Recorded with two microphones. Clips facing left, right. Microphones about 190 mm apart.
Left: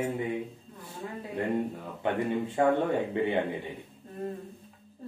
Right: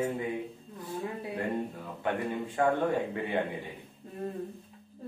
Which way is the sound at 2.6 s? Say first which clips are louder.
Left 2 dB; 25° left (ahead or behind).